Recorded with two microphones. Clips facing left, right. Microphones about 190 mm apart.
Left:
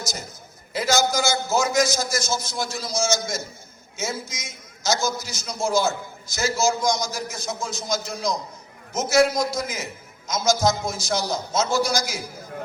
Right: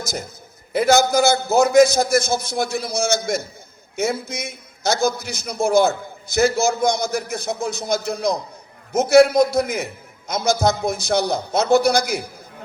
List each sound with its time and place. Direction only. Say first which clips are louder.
0.0 s a man's voice: right 5 dB; 55° right (ahead or behind)